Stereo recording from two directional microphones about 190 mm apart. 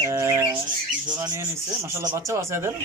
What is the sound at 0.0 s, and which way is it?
Bird, 15° right (ahead or behind).